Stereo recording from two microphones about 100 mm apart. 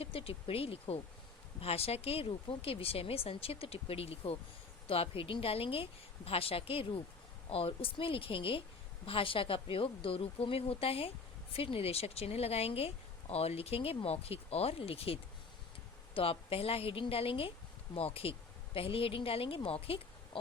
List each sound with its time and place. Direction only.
0.0 s speech: 70° left (ahead or behind)
1.6 s speech: 90° left; by 20.4 s 70° left (ahead or behind)